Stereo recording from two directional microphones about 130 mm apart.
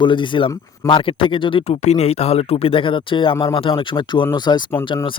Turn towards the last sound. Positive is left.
turn(degrees=40)  # may be behind; listen again after turning